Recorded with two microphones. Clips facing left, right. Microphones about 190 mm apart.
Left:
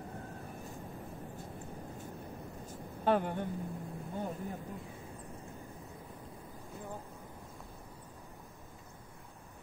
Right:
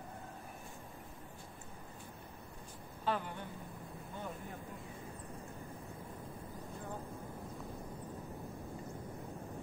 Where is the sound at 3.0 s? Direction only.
55° left (ahead or behind).